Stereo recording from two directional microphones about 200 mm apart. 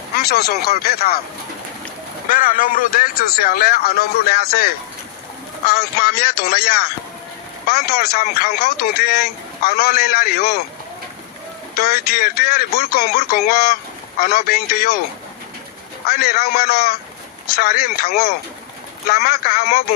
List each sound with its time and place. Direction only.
0.2 s speech: 50° left (ahead or behind)
2.3 s speech: 45° left (ahead or behind)
11.8 s speech: 50° left (ahead or behind)
16.0 s speech: 50° left (ahead or behind)